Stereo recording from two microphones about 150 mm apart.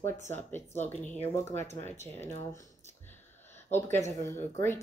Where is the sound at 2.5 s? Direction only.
20° left (ahead or behind).